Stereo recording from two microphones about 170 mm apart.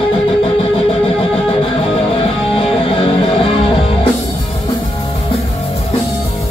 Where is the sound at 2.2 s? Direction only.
35° left (ahead or behind).